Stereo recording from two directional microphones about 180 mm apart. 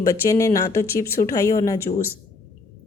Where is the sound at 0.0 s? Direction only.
15° left (ahead or behind).